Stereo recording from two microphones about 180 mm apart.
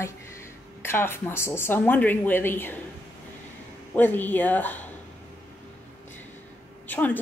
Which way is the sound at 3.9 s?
10° left (ahead or behind).